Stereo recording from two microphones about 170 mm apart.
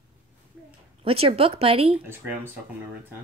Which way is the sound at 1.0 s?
35° right (ahead or behind).